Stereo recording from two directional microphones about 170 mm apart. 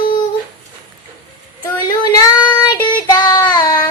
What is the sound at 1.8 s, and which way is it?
Child singing, 25° left (ahead or behind).